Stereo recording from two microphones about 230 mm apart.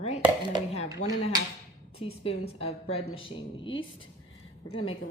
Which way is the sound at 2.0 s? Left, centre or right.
Left.